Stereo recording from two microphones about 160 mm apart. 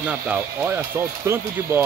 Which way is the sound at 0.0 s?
10° right (ahead or behind).